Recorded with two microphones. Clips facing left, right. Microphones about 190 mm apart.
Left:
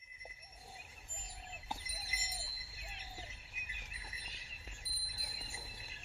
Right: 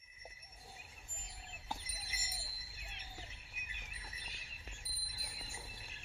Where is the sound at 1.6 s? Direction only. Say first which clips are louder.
Right 1 dB; 5° left (ahead or behind).